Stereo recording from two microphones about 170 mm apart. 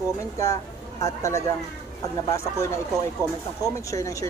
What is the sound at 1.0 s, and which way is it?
Speech, 20° left (ahead or behind).